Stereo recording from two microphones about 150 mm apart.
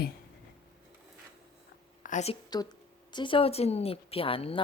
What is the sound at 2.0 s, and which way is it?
Speech, 55° left (ahead or behind).